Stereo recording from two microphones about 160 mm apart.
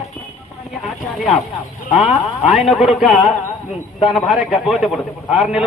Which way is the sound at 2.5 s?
Centre (ahead or behind).